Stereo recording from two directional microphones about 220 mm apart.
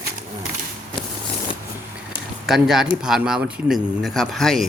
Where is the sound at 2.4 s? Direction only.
Centre (ahead or behind).